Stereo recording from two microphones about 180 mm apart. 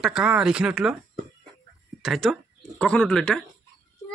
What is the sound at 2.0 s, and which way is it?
Speech, centre (ahead or behind).